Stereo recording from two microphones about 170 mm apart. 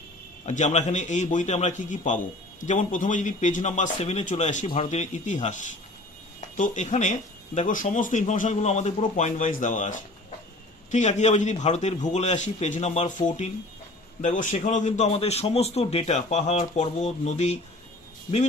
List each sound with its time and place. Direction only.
0.4 s a man's voice: 45° left (ahead or behind)